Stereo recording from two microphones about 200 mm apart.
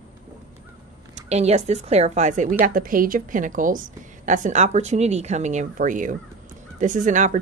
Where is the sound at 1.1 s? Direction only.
35° right (ahead or behind).